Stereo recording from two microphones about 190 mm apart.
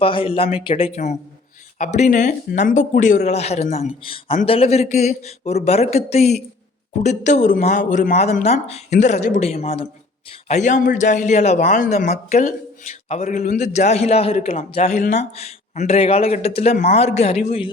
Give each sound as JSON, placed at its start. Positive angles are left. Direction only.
{"t": 0.0, "sound": "a man's voice", "side_deg": 30}